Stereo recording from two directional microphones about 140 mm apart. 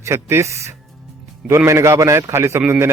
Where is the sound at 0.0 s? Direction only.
20° right (ahead or behind).